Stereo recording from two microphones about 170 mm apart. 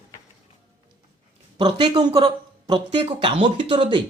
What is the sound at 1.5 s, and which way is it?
Speech, 30° right (ahead or behind).